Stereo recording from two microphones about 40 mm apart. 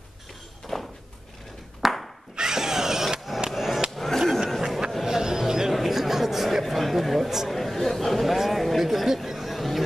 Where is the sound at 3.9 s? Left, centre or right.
Centre.